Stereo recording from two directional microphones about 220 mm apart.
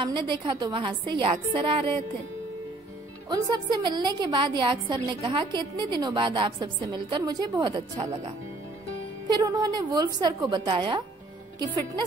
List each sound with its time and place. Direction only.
0.0 s a woman's voice: 20° right (ahead or behind)
3.3 s a woman's voice: 20° right (ahead or behind)
9.3 s a woman's voice: 15° right (ahead or behind)